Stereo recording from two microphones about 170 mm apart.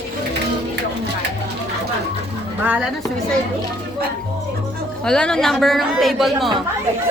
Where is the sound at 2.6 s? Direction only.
10° right (ahead or behind).